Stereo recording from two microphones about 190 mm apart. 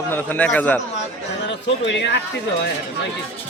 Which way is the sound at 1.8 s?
65° left (ahead or behind).